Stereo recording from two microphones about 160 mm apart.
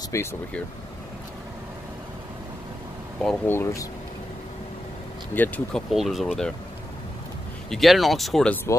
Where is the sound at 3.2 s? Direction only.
10° left (ahead or behind).